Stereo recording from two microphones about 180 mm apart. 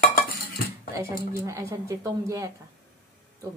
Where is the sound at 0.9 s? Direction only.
15° right (ahead or behind).